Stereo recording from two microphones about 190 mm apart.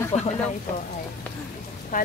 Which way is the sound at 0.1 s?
35° left (ahead or behind).